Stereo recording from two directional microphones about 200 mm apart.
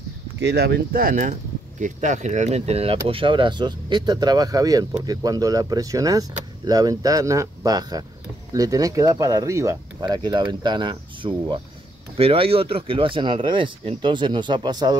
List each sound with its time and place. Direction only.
0.4 s speech: 55° right (ahead or behind); by 15.0 s 20° right (ahead or behind)